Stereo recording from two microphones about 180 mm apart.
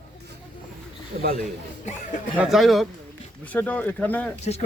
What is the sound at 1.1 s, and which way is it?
Speech, 40° right (ahead or behind).